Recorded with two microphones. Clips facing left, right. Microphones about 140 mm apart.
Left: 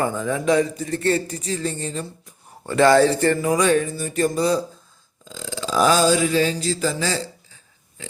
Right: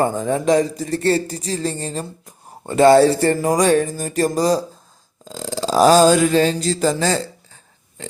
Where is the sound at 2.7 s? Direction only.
25° right (ahead or behind); by 4.6 s 40° right (ahead or behind).